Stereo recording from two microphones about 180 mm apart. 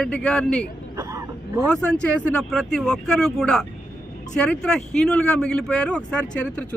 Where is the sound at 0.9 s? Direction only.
15° right (ahead or behind).